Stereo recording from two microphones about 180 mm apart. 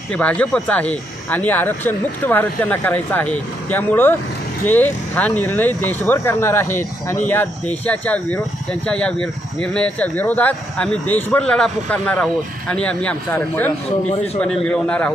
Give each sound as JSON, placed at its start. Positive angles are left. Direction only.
{"t": 0.1, "sound": "speech", "side_deg": 5}
{"t": 14.1, "sound": "a man's voice", "side_deg": 35}
{"t": 14.4, "sound": "speech", "side_deg": 5}